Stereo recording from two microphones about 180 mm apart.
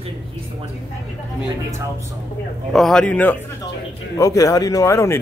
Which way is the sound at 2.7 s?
5° left (ahead or behind).